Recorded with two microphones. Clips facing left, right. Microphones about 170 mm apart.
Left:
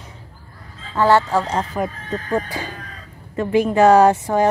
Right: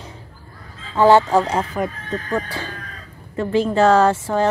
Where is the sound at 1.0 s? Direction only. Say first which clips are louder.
Right 3 dB; 15° right (ahead or behind).